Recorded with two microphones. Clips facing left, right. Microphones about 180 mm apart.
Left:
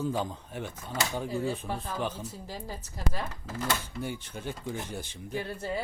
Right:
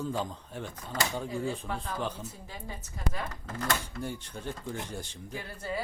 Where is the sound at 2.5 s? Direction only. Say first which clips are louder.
Left 3 dB; 35° left (ahead or behind).